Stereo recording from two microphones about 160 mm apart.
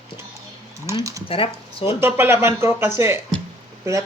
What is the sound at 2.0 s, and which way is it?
Speech, 15° right (ahead or behind).